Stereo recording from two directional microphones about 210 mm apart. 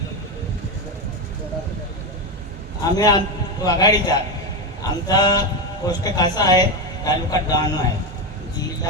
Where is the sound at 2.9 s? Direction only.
20° left (ahead or behind).